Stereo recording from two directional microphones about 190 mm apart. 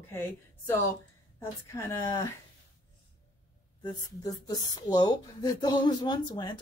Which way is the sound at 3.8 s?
20° left (ahead or behind).